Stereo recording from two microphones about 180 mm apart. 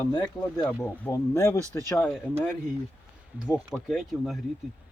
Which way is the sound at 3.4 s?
5° right (ahead or behind).